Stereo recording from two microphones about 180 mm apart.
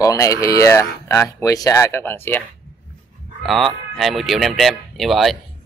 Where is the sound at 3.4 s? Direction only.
Centre (ahead or behind).